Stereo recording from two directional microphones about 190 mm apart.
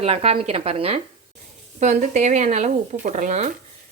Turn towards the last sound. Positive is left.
turn(degrees=-40)  # may be behind; listen again after turning